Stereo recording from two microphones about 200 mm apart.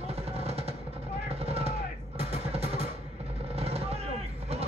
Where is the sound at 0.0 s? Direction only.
30° right (ahead or behind).